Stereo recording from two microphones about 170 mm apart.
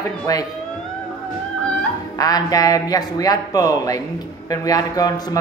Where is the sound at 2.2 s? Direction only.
20° left (ahead or behind).